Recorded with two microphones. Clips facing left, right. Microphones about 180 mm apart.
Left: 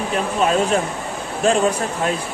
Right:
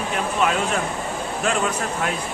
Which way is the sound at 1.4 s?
30° left (ahead or behind).